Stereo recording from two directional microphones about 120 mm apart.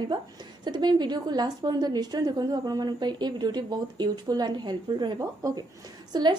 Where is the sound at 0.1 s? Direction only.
40° right (ahead or behind).